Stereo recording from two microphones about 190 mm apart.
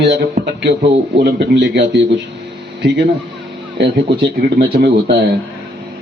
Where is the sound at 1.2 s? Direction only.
60° right (ahead or behind).